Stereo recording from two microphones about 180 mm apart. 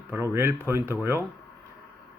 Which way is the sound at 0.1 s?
15° right (ahead or behind).